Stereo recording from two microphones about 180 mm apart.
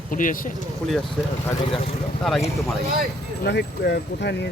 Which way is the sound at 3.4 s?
65° left (ahead or behind).